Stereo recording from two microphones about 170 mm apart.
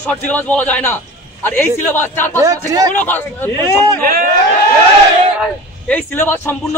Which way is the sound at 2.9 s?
10° left (ahead or behind).